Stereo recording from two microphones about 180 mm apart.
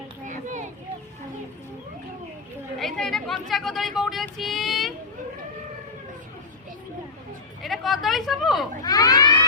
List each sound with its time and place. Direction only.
2.7 s speech: centre (ahead or behind)
7.6 s speech: centre (ahead or behind)
8.8 s speech: 20° left (ahead or behind)